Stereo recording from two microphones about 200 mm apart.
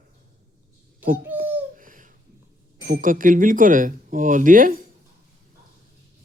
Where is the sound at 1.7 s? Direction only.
40° right (ahead or behind).